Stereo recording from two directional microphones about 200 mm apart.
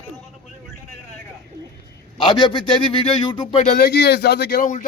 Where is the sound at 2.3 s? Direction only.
20° left (ahead or behind); by 4.8 s 40° left (ahead or behind).